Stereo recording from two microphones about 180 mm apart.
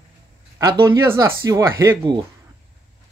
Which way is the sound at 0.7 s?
20° right (ahead or behind).